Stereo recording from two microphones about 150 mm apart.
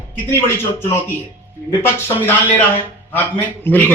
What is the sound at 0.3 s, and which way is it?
Speech, 15° left (ahead or behind).